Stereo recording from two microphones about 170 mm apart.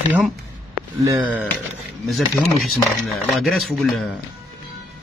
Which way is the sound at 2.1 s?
Centre (ahead or behind).